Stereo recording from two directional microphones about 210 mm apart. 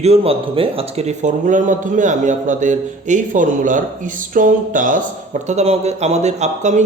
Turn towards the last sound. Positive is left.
turn(degrees=-35)  # may be behind; listen again after turning